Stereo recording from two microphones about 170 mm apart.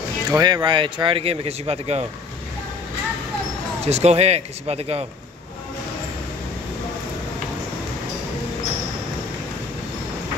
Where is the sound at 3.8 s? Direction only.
40° right (ahead or behind).